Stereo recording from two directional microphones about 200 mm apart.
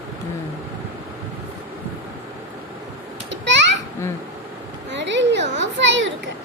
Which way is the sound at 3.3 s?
65° right (ahead or behind).